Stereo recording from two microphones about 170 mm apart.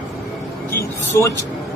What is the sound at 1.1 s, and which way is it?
Speech, 15° left (ahead or behind).